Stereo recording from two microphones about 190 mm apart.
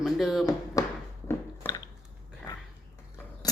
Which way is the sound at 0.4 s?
15° left (ahead or behind).